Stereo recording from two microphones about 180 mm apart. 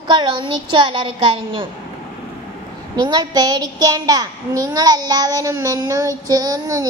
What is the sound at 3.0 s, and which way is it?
A child's voice, 25° right (ahead or behind).